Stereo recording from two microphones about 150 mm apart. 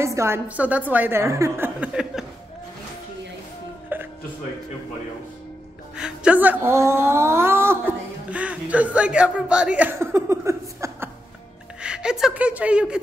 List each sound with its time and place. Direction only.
0.0 s a woman's voice: 20° right (ahead or behind)
2.1 s speech: 5° right (ahead or behind)
3.9 s music: 15° right (ahead or behind)
5.9 s music: 5° right (ahead or behind)
8.3 s speech: 10° right (ahead or behind)
11.8 s a woman's voice: 5° right (ahead or behind)